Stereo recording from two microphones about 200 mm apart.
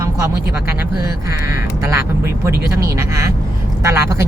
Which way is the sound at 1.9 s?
15° right (ahead or behind).